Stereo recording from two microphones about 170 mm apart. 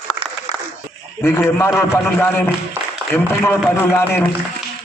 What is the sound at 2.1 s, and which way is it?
A man's voice, 10° left (ahead or behind).